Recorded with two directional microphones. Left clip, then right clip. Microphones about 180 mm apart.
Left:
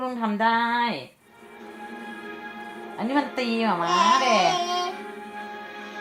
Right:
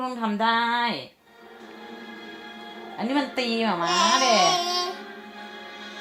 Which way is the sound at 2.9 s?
15° right (ahead or behind).